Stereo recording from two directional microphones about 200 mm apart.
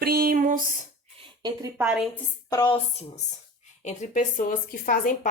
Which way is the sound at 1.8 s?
5° right (ahead or behind).